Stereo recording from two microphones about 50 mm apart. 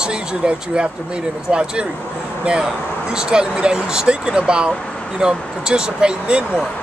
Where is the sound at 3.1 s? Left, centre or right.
Centre.